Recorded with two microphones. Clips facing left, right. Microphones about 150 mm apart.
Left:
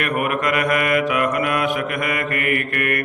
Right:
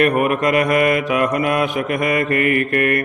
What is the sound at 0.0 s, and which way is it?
Mantra, 30° right (ahead or behind).